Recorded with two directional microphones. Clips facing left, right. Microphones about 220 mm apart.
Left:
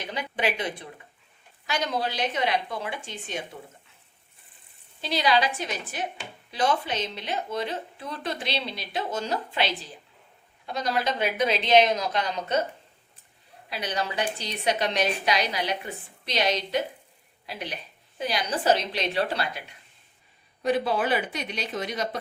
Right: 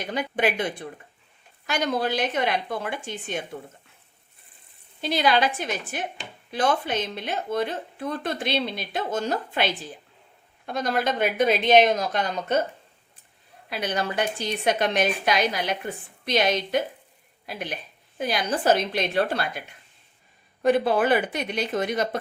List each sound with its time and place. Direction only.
0.0 s speech: 50° right (ahead or behind)
4.9 s speech: 50° right (ahead or behind)
13.7 s speech: 50° right (ahead or behind)